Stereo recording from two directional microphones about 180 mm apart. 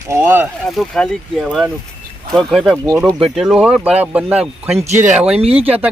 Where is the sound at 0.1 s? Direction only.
10° right (ahead or behind).